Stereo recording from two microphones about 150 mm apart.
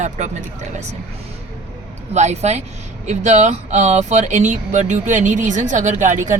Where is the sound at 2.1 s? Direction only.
50° right (ahead or behind).